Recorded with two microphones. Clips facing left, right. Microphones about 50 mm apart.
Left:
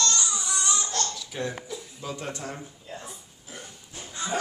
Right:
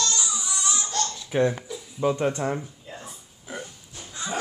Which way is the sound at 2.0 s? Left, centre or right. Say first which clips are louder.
Right 13 dB; right.